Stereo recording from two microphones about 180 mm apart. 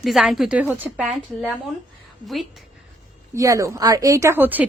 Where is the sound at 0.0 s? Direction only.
Centre (ahead or behind).